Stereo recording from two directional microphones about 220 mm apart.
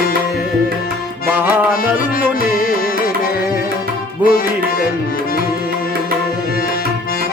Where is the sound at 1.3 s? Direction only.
10° right (ahead or behind).